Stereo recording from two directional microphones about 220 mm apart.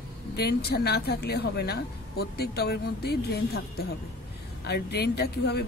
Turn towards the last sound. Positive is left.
turn(degrees=45)  # may be behind; listen again after turning